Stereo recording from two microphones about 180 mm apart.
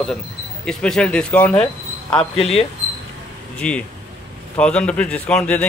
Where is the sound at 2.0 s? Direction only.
30° left (ahead or behind).